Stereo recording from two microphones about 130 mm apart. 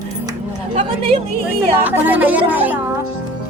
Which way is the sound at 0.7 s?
45° right (ahead or behind).